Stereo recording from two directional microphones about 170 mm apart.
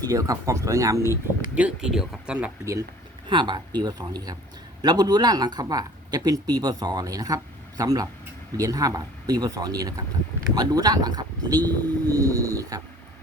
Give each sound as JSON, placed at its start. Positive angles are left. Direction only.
{"t": 0.0, "sound": "speech", "side_deg": -20}
{"t": 1.5, "sound": "speech", "side_deg": -5}
{"t": 3.2, "sound": "speech", "side_deg": -25}